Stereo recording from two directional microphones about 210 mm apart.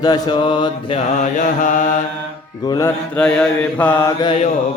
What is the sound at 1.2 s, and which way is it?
Mantra, 35° left (ahead or behind).